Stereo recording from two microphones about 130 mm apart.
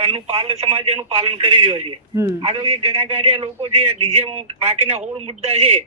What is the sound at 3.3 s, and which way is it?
A man's voice, 50° right (ahead or behind).